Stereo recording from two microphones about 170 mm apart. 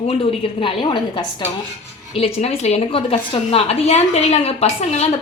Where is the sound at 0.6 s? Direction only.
30° left (ahead or behind).